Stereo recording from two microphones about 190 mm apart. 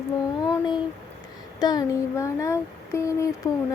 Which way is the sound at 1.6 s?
20° left (ahead or behind).